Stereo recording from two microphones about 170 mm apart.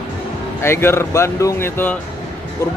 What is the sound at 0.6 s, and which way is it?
Speech, 15° left (ahead or behind).